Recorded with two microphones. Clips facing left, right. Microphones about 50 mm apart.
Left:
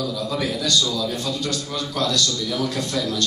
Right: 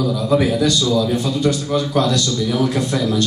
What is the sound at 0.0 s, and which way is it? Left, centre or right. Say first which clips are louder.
A man's voice: right 8 dB; centre.